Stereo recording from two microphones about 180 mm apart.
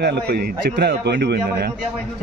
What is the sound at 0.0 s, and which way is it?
A man's voice, 60° right (ahead or behind).